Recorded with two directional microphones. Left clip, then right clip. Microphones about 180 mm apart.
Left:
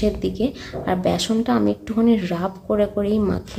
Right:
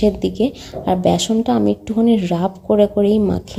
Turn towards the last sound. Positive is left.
turn(degrees=-25)  # may be behind; listen again after turning